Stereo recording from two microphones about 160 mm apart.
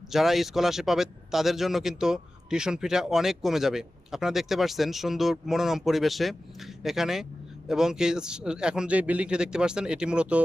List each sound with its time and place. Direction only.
0.1 s speech: centre (ahead or behind)